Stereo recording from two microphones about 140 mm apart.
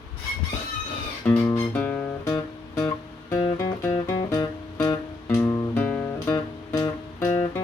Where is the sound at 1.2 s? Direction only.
20° left (ahead or behind).